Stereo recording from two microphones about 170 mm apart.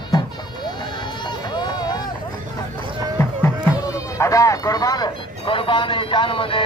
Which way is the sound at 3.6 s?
20° left (ahead or behind).